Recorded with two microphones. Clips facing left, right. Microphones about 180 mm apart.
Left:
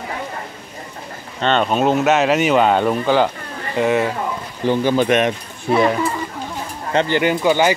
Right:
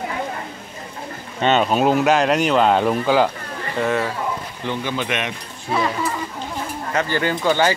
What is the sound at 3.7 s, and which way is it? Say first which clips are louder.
Speech: left 4 dB; 15° left (ahead or behind).